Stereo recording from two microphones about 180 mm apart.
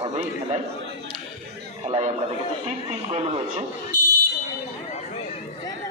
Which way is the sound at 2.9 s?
30° right (ahead or behind).